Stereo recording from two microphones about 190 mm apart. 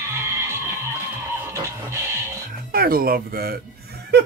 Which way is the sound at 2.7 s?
50° right (ahead or behind).